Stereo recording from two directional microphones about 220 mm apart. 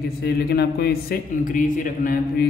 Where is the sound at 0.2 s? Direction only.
45° left (ahead or behind).